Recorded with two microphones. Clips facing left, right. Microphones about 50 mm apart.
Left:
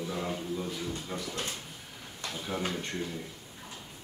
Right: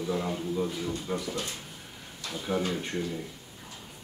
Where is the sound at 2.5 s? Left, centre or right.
Centre.